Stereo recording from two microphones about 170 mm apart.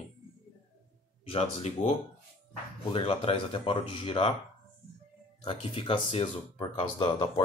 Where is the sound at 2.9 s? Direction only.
35° left (ahead or behind).